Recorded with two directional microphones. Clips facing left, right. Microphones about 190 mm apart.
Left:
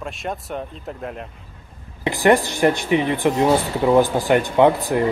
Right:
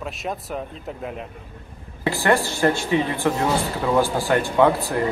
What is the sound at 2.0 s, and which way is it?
Speech, 20° left (ahead or behind).